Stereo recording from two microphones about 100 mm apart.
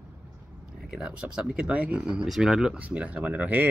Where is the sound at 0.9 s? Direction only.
10° right (ahead or behind).